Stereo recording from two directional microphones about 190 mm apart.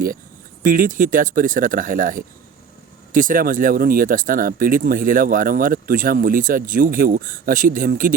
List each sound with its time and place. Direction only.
0.6 s speech: 45° right (ahead or behind)